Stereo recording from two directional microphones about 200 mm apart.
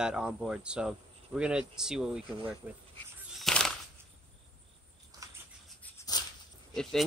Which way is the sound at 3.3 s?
Centre (ahead or behind).